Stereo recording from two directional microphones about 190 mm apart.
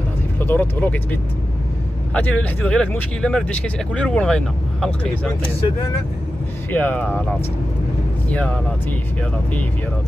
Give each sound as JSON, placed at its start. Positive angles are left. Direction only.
{"t": 0.4, "sound": "speech", "side_deg": 10}
{"t": 6.7, "sound": "speech", "side_deg": 10}